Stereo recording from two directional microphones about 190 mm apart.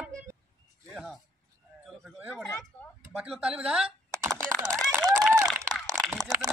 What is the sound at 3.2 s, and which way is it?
Speech, 5° right (ahead or behind).